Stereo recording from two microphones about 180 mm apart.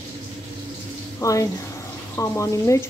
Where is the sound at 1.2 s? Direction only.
15° left (ahead or behind).